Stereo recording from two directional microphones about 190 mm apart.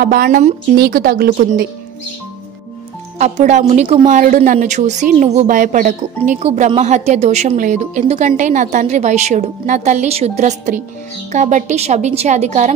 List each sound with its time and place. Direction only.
0.0 s speech: 50° right (ahead or behind)
3.2 s a woman's voice: 40° right (ahead or behind)